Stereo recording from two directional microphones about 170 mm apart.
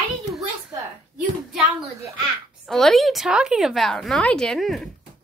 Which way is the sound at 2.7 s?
Centre (ahead or behind).